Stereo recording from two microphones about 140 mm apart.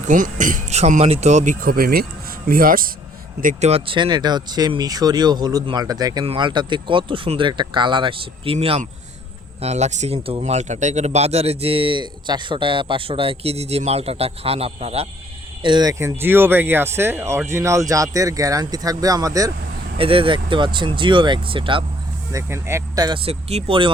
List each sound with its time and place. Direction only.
0.1 s speech: 70° right (ahead or behind); by 2.9 s 90° right
3.4 s speech: 50° right (ahead or behind)
15.6 s speech: 30° right (ahead or behind)
20.0 s speech: 40° right (ahead or behind)
22.3 s speech: 20° right (ahead or behind)
23.0 s speech: 40° right (ahead or behind)